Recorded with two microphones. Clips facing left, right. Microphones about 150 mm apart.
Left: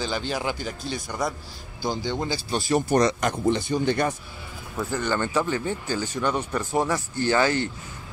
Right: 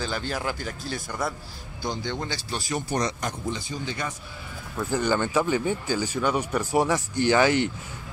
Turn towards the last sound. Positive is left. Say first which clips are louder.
# right 2 dB
turn(degrees=-15)  # may be behind; listen again after turning